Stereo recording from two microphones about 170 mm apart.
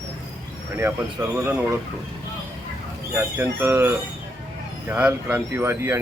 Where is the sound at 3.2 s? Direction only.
15° right (ahead or behind).